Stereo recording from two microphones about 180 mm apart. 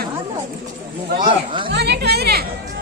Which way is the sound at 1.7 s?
70° right (ahead or behind).